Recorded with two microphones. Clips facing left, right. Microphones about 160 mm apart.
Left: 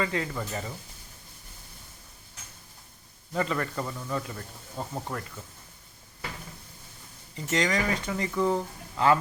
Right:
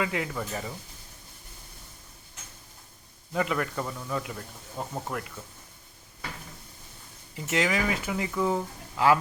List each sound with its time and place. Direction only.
0.0 s a man's voice: 5° right (ahead or behind)
3.3 s a man's voice: 5° right (ahead or behind)
7.3 s a man's voice: 5° right (ahead or behind)